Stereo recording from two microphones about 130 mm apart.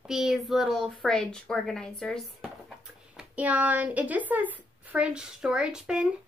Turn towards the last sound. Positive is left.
turn(degrees=-10)  # may be behind; listen again after turning